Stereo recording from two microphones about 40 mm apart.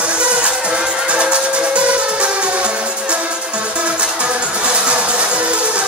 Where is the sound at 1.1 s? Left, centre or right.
Right.